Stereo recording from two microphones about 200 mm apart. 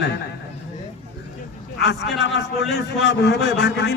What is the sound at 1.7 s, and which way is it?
A man's voice, 60° left (ahead or behind).